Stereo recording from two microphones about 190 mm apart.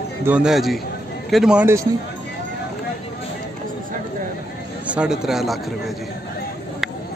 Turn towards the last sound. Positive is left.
turn(degrees=0)  # may be behind; listen again after turning